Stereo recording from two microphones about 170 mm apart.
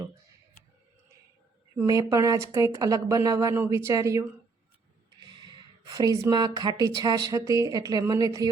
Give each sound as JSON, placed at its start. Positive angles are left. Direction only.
{"t": 1.7, "sound": "speech", "side_deg": -20}
{"t": 5.2, "sound": "a sound", "side_deg": -25}
{"t": 6.3, "sound": "speech", "side_deg": -25}